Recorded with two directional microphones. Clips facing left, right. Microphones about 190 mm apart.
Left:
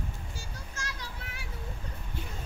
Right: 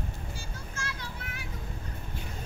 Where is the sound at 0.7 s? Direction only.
35° left (ahead or behind).